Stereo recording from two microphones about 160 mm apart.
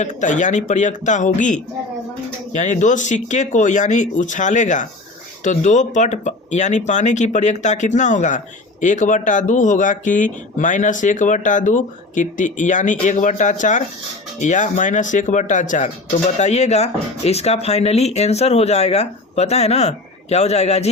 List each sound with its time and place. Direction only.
0.0 s speech: 50° left (ahead or behind)